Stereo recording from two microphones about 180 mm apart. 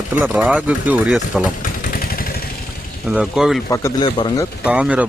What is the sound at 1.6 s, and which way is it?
Motorcycle, 50° left (ahead or behind).